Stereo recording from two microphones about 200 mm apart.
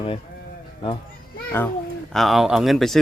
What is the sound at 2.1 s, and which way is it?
Speech, centre (ahead or behind).